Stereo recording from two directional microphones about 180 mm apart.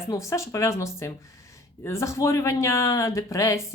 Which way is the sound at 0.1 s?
15° left (ahead or behind).